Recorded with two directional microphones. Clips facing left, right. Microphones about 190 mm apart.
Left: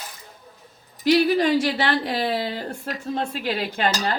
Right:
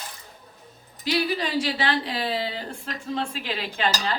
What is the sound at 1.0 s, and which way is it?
A man's voice, 50° left (ahead or behind).